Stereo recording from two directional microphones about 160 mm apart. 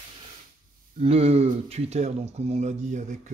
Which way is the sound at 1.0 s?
40° right (ahead or behind).